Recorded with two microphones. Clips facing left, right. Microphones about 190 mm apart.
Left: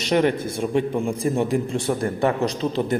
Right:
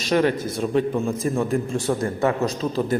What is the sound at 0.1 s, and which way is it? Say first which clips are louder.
A man's voice: even; 20° left (ahead or behind).